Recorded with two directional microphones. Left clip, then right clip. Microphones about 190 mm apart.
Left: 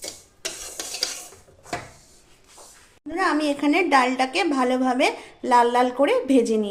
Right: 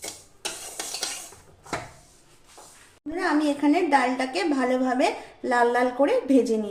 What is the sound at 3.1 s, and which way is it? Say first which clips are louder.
A woman's voice: left 2 dB; 40° left (ahead or behind).